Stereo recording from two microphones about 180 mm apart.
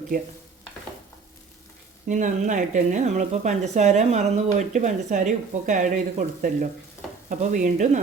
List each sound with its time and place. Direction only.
0.1 s speech: 45° right (ahead or behind)
2.0 s speech: 45° right (ahead or behind)